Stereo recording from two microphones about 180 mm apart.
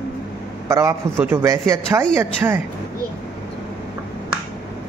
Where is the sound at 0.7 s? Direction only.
15° right (ahead or behind).